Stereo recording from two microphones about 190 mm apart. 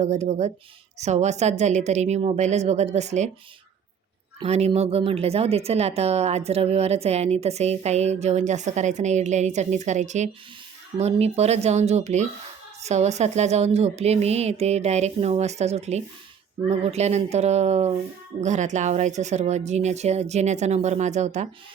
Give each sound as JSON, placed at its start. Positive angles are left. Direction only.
{"t": 0.0, "sound": "a woman's voice", "side_deg": -35}
{"t": 4.4, "sound": "a woman's voice", "side_deg": -35}